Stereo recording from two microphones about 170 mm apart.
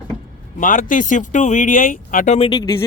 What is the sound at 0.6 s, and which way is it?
Speech, 50° left (ahead or behind).